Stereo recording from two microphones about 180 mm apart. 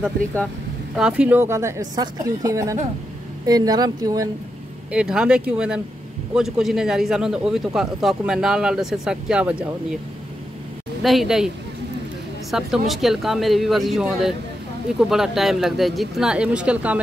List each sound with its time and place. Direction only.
0.9 s a woman's voice: 5° right (ahead or behind)
4.9 s speech: 5° right (ahead or behind)
11.0 s speech: centre (ahead or behind)